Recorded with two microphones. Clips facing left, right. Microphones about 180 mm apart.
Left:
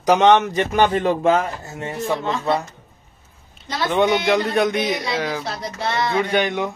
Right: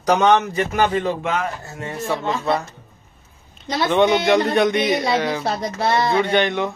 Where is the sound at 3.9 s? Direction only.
10° left (ahead or behind).